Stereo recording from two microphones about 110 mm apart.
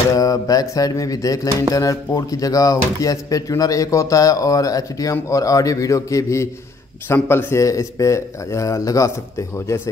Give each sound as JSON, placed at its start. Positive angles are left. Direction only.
{"t": 0.1, "sound": "speech", "side_deg": 30}